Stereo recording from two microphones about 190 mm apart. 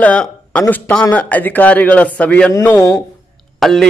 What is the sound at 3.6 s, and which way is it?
Speech, centre (ahead or behind).